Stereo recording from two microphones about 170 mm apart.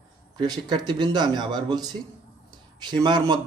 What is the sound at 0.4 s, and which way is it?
A man's voice, 25° right (ahead or behind).